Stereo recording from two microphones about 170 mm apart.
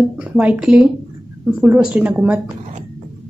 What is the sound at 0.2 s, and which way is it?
A woman's voice, 5° right (ahead or behind).